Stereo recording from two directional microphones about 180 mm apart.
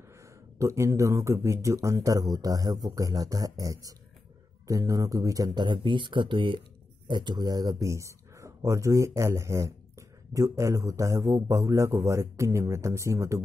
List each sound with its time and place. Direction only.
0.2 s speech: 15° right (ahead or behind)